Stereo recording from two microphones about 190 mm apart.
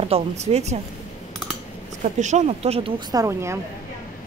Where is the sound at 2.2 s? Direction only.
35° right (ahead or behind); by 3.6 s 15° right (ahead or behind).